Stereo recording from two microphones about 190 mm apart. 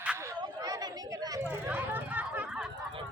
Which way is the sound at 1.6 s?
10° right (ahead or behind).